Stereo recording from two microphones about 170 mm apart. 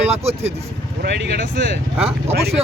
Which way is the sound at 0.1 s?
40° right (ahead or behind).